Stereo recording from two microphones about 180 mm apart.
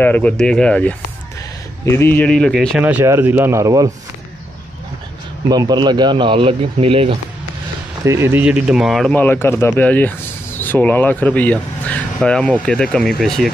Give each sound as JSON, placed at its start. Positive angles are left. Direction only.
{"t": 0.0, "sound": "speech", "side_deg": 10}
{"t": 2.8, "sound": "speech", "side_deg": -10}
{"t": 5.5, "sound": "speech", "side_deg": -20}
{"t": 8.0, "sound": "speech", "side_deg": -15}